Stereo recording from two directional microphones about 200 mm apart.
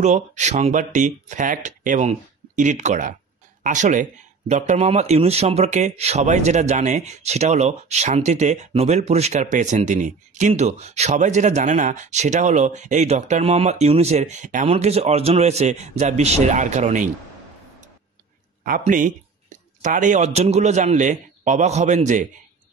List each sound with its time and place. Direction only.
0.0 s speech: 35° right (ahead or behind)
18.6 s speech: 45° right (ahead or behind)